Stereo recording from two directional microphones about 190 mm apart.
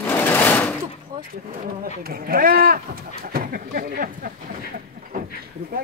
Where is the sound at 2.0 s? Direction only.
50° right (ahead or behind).